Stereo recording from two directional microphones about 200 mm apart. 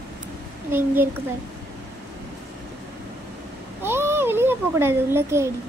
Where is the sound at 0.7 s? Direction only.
10° right (ahead or behind).